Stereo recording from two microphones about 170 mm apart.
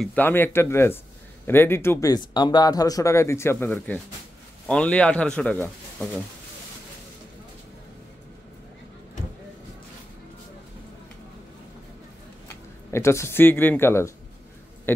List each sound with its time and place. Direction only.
0.0 s speech: 10° left (ahead or behind)
12.4 s speech: 15° left (ahead or behind)